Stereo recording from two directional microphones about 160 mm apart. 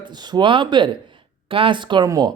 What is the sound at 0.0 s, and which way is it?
Speech, 25° right (ahead or behind).